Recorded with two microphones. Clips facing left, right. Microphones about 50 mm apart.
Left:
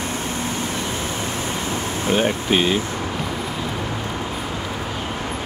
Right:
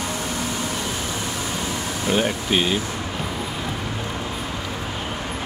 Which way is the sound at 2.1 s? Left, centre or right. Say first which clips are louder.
Left 2 dB; left.